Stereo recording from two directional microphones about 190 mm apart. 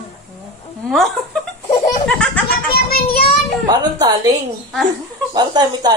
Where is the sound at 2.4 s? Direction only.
55° left (ahead or behind).